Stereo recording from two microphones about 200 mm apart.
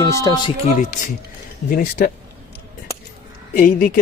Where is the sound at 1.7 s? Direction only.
45° left (ahead or behind).